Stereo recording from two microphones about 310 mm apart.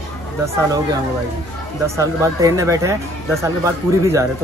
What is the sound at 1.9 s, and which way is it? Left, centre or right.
Speech, centre.